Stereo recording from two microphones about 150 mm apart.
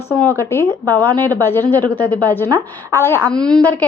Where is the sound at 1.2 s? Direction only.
15° left (ahead or behind).